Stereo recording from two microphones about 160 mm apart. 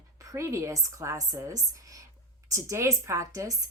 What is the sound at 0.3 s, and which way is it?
A woman's voice, 20° right (ahead or behind).